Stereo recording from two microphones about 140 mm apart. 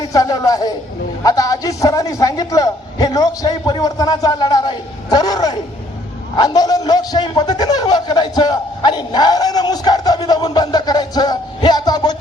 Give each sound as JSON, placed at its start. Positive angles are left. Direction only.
{"t": 0.0, "sound": "a man's voice", "side_deg": 25}